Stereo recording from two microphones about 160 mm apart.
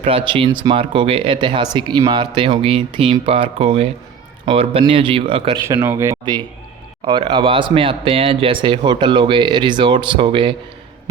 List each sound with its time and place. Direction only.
0.0 s speech: 35° right (ahead or behind)
5.6 s speech: 15° right (ahead or behind)
7.0 s speech: 30° right (ahead or behind)